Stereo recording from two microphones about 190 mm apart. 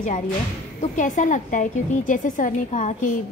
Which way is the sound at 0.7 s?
40° left (ahead or behind).